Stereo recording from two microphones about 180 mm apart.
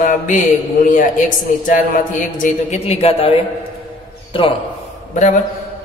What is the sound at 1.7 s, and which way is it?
A man's voice, 45° left (ahead or behind).